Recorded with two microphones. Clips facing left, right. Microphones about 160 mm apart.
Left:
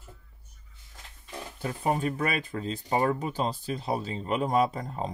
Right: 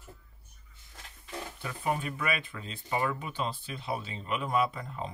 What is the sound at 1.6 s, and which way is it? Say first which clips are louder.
Speech: left 5 dB; 35° left (ahead or behind).